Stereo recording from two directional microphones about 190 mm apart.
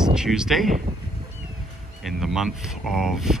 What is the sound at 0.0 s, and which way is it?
Speech, 5° right (ahead or behind).